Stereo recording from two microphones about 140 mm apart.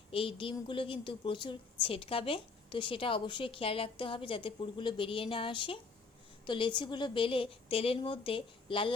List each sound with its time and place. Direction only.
0.1 s a woman's voice: 40° left (ahead or behind)